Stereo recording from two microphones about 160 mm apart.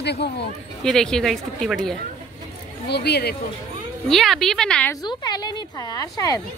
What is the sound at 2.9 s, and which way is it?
Speech, 90° left.